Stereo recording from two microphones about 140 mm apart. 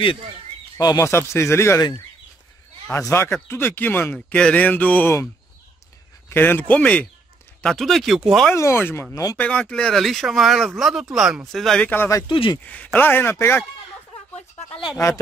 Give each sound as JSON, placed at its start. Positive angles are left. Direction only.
{"t": 0.7, "sound": "speech", "side_deg": 25}
{"t": 2.9, "sound": "speech", "side_deg": 20}
{"t": 8.5, "sound": "speech", "side_deg": 20}
{"t": 9.4, "sound": "speech", "side_deg": 10}
{"t": 12.3, "sound": "speech", "side_deg": 40}
{"t": 12.6, "sound": "speech", "side_deg": 10}